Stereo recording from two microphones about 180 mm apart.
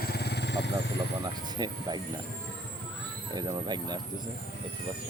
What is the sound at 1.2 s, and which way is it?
Speech, 25° right (ahead or behind).